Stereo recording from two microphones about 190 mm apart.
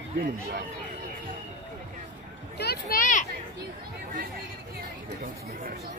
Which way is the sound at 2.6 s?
55° left (ahead or behind).